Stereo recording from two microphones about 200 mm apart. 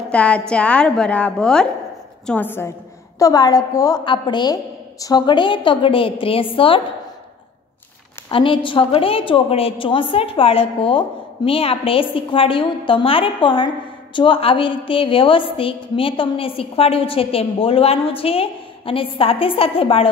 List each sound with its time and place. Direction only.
0.1 s a woman's voice: 5° left (ahead or behind); by 6.8 s 25° left (ahead or behind)
8.3 s a woman's voice: 25° left (ahead or behind)